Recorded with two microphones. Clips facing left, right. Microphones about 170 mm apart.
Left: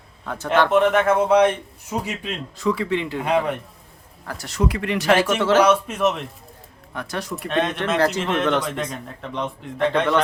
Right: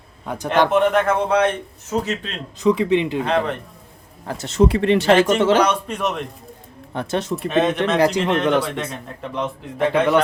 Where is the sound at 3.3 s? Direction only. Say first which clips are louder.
Left 3 dB; 10° left (ahead or behind).